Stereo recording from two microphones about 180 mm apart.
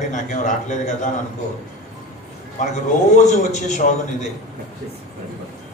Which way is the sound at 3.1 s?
40° left (ahead or behind).